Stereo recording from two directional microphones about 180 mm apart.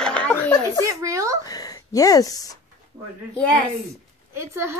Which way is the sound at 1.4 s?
20° left (ahead or behind).